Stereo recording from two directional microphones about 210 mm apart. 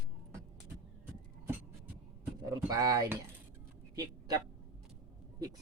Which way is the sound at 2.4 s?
15° right (ahead or behind).